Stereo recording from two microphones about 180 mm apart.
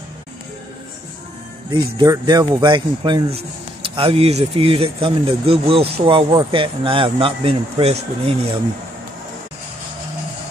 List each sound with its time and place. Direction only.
1.7 s speech: 25° right (ahead or behind)